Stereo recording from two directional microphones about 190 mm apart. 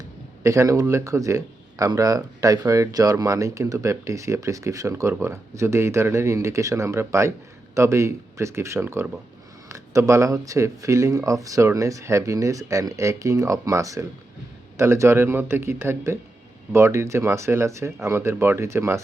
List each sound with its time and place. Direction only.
0.4 s speech: 15° right (ahead or behind)